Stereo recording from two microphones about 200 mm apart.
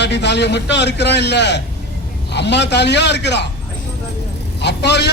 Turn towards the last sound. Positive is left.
turn(degrees=60)  # may be behind; listen again after turning